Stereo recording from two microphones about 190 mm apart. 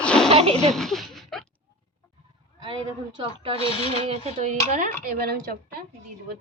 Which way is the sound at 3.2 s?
30° right (ahead or behind).